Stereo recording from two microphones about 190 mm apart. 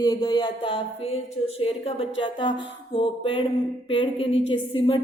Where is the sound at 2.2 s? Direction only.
25° left (ahead or behind).